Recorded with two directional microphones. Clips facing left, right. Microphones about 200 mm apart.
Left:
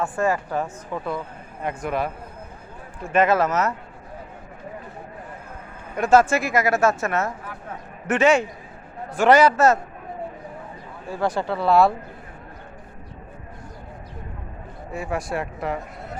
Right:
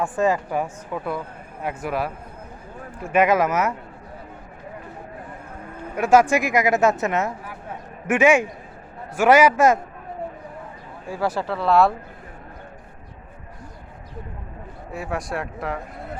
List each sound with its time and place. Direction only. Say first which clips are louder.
0.0 s speech: right 2 dB; 15° right (ahead or behind)
6.0 s speech: right 1 dB; 10° right (ahead or behind)
11.1 s speech: left 1 dB; 5° right (ahead or behind)
14.9 s speech: left 1 dB; centre (ahead or behind)